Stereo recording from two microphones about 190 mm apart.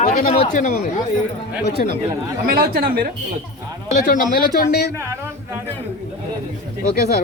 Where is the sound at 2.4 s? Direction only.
55° right (ahead or behind).